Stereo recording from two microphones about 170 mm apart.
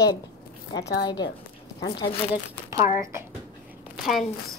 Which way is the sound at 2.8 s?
50° left (ahead or behind).